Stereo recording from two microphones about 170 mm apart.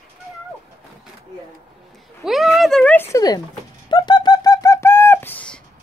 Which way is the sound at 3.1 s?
20° left (ahead or behind).